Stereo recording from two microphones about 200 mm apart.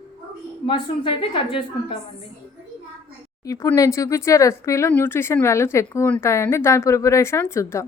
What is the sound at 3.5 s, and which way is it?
Speech, 15° left (ahead or behind).